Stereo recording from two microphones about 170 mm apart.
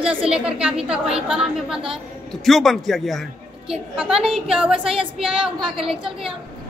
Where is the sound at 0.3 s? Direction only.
5° right (ahead or behind).